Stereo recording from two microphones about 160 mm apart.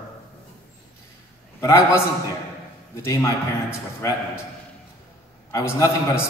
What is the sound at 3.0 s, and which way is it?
Speech, 15° left (ahead or behind).